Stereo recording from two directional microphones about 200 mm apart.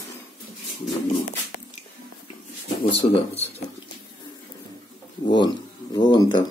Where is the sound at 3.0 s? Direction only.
30° left (ahead or behind).